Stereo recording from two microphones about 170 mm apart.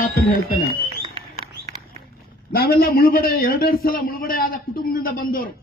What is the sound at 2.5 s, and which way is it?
A man's voice, 65° left (ahead or behind).